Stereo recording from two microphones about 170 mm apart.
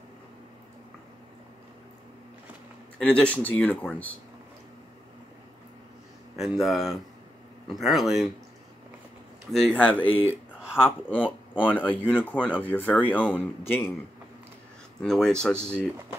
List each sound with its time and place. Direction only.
3.0 s speech: 5° left (ahead or behind)
6.3 s speech: centre (ahead or behind)
9.5 s speech: 5° left (ahead or behind)
10.0 s speech: 35° left (ahead or behind)
10.8 s speech: 10° left (ahead or behind)
15.0 s speech: 5° left (ahead or behind)